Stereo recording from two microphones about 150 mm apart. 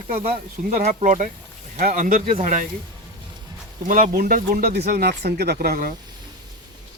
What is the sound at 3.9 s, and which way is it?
Speech, 65° right (ahead or behind).